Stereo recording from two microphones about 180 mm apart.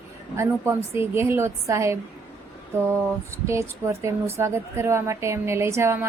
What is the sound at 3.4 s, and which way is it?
A woman's voice, 15° right (ahead or behind).